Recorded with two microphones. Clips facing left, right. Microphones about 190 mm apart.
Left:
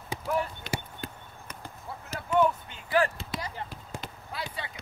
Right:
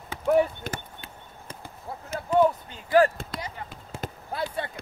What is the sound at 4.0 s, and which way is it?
Basketball bounce, 50° right (ahead or behind).